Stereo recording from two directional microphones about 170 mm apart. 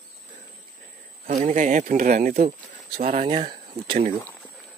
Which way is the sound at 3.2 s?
35° right (ahead or behind).